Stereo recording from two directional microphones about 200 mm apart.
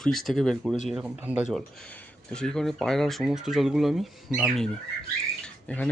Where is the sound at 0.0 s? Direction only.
Centre (ahead or behind).